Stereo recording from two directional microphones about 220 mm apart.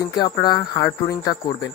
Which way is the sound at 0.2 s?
20° left (ahead or behind).